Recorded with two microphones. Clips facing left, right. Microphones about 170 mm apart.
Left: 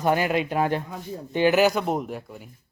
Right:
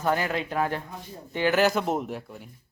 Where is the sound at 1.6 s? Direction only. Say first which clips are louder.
Left 2 dB; centre (ahead or behind).